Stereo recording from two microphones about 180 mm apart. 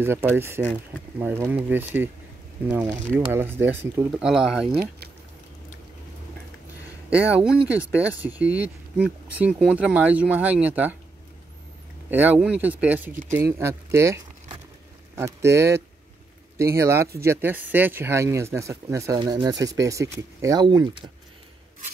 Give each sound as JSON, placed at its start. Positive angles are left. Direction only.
{"t": 0.0, "sound": "speech", "side_deg": -10}
{"t": 7.1, "sound": "speech", "side_deg": -5}
{"t": 12.1, "sound": "speech", "side_deg": -10}